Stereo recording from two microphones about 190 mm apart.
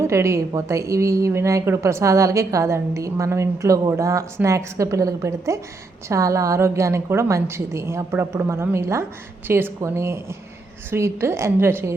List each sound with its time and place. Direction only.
0.0 s a woman's voice: 15° right (ahead or behind)